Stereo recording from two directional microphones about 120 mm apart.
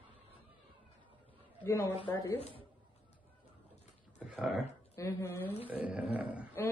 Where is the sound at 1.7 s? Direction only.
25° left (ahead or behind).